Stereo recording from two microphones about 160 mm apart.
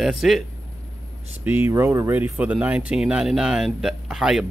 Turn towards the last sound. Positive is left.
turn(degrees=-5)  # may be behind; listen again after turning